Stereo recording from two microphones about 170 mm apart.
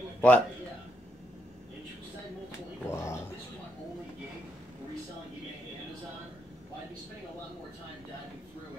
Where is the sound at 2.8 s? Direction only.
15° left (ahead or behind).